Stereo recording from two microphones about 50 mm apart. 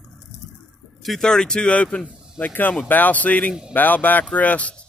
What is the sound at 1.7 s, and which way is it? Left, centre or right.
Speech, left.